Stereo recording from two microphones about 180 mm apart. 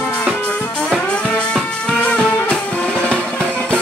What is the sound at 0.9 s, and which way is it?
Music, 5° left (ahead or behind).